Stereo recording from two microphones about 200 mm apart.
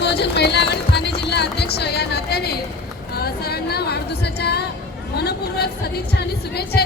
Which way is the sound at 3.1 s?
50° left (ahead or behind).